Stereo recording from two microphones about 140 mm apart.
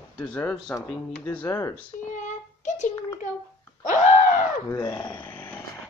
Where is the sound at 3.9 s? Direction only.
65° left (ahead or behind).